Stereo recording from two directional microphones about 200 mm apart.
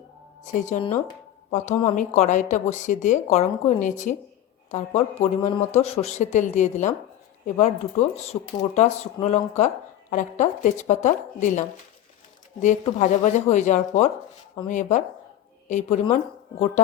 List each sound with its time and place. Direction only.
0.4 s speech: 40° left (ahead or behind)
12.6 s speech: 40° left (ahead or behind)